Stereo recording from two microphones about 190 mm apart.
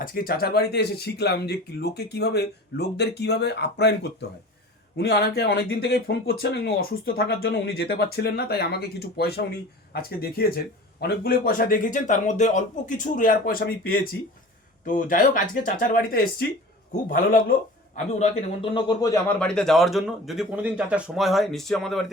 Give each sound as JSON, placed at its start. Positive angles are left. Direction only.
{"t": 0.0, "sound": "a man's voice", "side_deg": 50}
{"t": 19.4, "sound": "speech", "side_deg": 5}